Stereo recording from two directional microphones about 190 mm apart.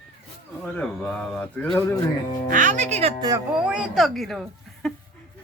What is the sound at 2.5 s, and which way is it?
Speech, 40° right (ahead or behind).